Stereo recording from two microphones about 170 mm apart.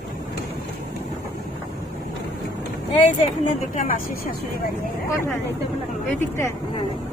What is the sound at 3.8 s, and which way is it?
Speech, 55° left (ahead or behind).